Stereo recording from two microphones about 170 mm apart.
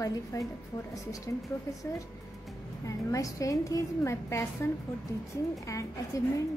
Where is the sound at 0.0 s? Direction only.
20° left (ahead or behind).